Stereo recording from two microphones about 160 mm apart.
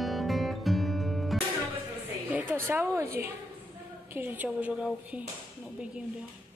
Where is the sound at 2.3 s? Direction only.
10° right (ahead or behind).